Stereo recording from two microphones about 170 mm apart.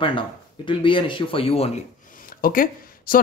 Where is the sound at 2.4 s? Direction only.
55° left (ahead or behind).